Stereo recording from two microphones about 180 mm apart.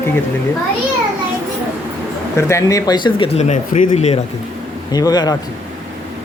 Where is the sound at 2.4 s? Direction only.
15° left (ahead or behind); by 4.1 s 40° left (ahead or behind).